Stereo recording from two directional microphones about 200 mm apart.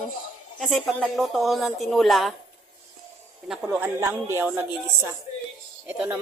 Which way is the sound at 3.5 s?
10° right (ahead or behind).